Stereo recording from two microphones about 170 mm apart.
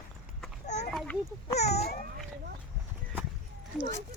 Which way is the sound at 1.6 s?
40° left (ahead or behind).